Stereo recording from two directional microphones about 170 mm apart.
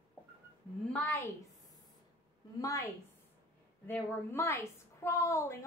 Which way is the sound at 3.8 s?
15° left (ahead or behind).